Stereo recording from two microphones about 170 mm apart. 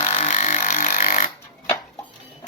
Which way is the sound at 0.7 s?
55° left (ahead or behind).